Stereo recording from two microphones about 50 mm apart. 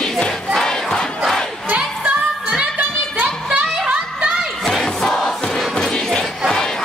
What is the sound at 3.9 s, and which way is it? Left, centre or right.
Music, right.